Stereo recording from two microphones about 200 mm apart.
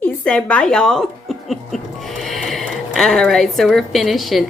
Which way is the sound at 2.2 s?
Centre (ahead or behind).